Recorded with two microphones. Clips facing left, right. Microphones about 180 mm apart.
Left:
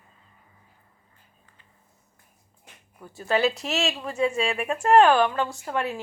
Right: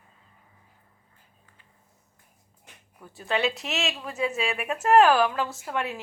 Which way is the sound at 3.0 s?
Centre (ahead or behind).